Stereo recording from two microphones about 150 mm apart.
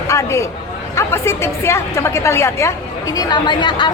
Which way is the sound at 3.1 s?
25° left (ahead or behind).